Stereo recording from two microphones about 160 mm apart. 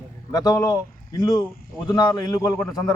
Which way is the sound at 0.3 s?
20° left (ahead or behind).